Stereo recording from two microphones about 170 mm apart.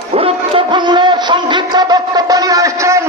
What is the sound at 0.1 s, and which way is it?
Music, 35° right (ahead or behind).